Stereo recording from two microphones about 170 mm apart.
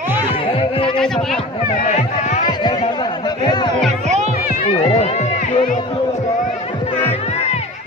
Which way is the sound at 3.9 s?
40° right (ahead or behind).